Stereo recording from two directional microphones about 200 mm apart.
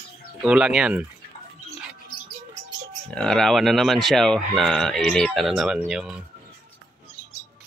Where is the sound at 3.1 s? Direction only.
5° left (ahead or behind).